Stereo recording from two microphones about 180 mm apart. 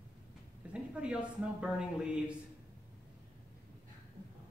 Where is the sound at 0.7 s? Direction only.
5° right (ahead or behind).